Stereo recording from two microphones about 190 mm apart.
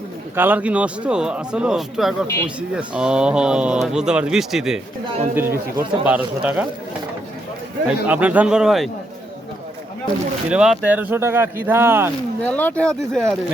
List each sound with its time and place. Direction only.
0.3 s speech: 10° right (ahead or behind)
2.2 s speech: 15° left (ahead or behind)
2.6 s speech: 5° right (ahead or behind)
7.9 s speech: 10° right (ahead or behind)
10.5 s speech: 5° right (ahead or behind)
12.4 s speech: 10° left (ahead or behind)